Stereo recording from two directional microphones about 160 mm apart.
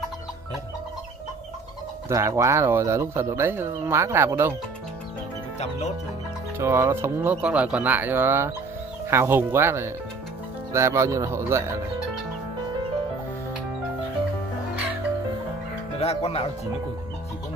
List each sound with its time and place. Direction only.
2.0 s speech: 20° right (ahead or behind)
6.6 s speech: 15° right (ahead or behind)
16.0 s speech: 40° left (ahead or behind)